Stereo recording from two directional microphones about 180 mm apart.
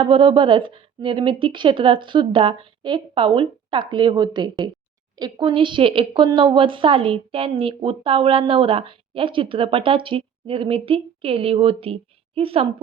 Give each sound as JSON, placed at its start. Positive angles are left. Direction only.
{"t": 0.0, "sound": "a woman's voice", "side_deg": -30}